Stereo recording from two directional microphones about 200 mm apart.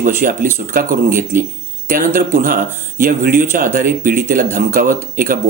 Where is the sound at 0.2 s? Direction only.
45° right (ahead or behind).